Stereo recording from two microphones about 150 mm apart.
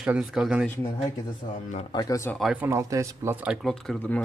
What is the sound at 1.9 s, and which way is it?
Speech, 25° left (ahead or behind).